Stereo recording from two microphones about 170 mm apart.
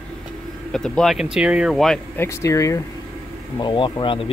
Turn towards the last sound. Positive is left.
turn(degrees=30)  # may be behind; listen again after turning